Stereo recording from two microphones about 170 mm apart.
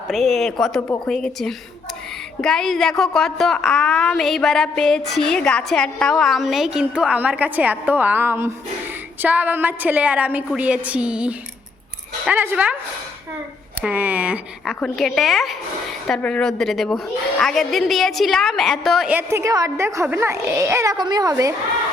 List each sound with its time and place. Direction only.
0.1 s a woman's voice: centre (ahead or behind)
13.8 s a woman's voice: 10° right (ahead or behind)
14.8 s a woman's voice: 5° left (ahead or behind); by 21.5 s 20° right (ahead or behind)